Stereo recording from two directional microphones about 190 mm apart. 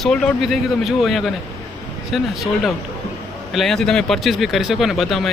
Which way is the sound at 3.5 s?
Centre (ahead or behind).